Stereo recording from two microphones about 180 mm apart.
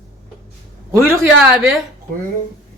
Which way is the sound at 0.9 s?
15° right (ahead or behind).